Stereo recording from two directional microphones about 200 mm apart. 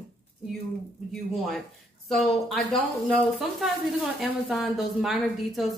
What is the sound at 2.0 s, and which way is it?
A woman's voice, centre (ahead or behind).